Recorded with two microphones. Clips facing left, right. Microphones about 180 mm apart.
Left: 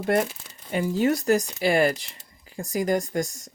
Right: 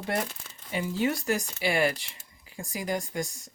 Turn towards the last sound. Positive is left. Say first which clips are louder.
# left 7 dB
turn(degrees=45)  # may be behind; listen again after turning